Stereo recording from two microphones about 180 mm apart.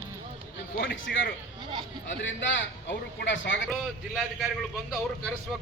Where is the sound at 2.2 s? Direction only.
85° left.